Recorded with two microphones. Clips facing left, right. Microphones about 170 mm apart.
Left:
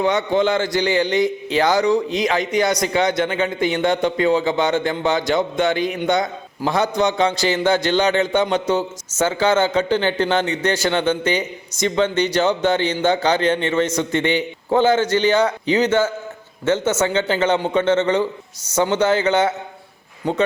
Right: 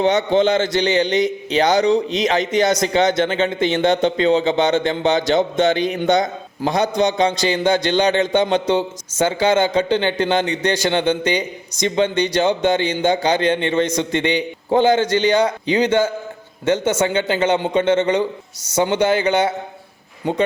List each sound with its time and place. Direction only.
0.0 s a man's voice: 25° right (ahead or behind)